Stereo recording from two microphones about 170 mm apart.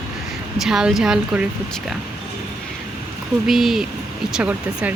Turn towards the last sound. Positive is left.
turn(degrees=-10)  # may be behind; listen again after turning